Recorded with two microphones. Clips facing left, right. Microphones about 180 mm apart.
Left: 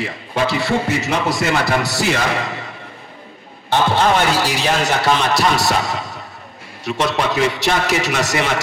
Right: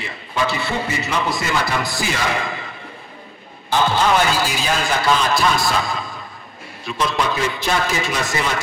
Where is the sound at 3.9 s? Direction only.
70° left (ahead or behind).